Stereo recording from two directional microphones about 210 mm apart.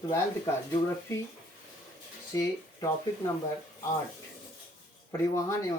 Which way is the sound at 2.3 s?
15° left (ahead or behind).